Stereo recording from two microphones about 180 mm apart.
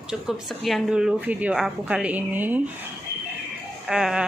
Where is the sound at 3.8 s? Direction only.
5° right (ahead or behind).